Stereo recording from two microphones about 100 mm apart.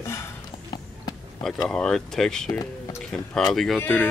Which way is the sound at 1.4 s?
5° left (ahead or behind).